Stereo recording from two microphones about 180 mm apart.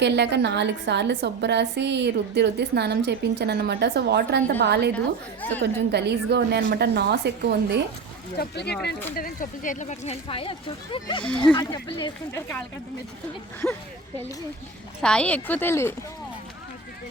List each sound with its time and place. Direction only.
0.0 s a woman's voice: 70° right (ahead or behind)
8.4 s speech: 65° left (ahead or behind)
9.1 s speech: 50° left (ahead or behind); by 12.4 s 20° left (ahead or behind)
13.6 s speech: centre (ahead or behind)
15.0 s speech: 5° left (ahead or behind)